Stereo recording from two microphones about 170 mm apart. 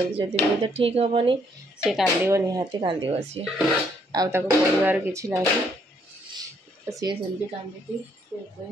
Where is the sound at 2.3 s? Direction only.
20° right (ahead or behind); by 3.5 s 35° right (ahead or behind).